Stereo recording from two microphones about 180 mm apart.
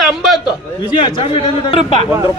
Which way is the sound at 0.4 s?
25° left (ahead or behind).